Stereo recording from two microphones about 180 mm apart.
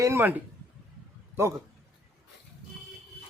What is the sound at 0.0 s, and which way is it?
A man's voice, 15° right (ahead or behind).